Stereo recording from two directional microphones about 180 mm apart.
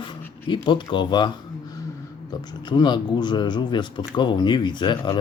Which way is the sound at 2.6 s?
25° left (ahead or behind).